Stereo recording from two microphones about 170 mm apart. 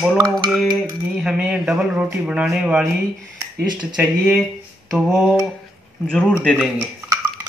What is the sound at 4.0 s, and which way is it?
Speech, 5° right (ahead or behind).